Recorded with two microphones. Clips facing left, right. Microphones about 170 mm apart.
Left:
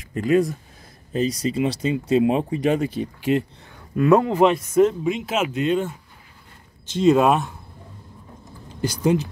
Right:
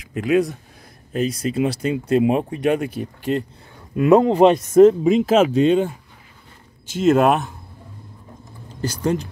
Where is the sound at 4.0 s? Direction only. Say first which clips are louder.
Right 3 dB; 25° right (ahead or behind).